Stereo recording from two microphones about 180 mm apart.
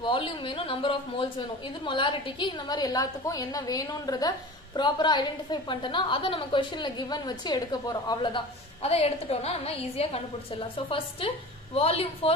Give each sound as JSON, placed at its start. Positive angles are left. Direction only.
{"t": 0.0, "sound": "a woman's voice", "side_deg": 25}
{"t": 8.8, "sound": "a woman's voice", "side_deg": 35}